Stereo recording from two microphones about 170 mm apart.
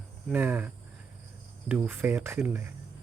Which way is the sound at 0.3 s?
10° right (ahead or behind).